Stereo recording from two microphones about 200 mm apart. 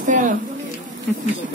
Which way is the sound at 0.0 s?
40° right (ahead or behind).